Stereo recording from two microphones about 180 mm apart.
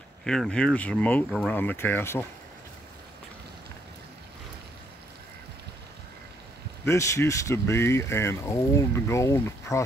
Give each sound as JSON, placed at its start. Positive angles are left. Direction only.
{"t": 0.2, "sound": "speech", "side_deg": 5}
{"t": 6.8, "sound": "speech", "side_deg": 15}